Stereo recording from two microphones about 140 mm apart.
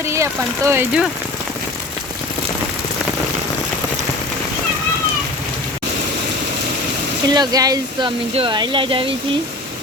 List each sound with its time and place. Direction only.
0.1 s speech: 20° right (ahead or behind)
7.3 s speech: 30° right (ahead or behind)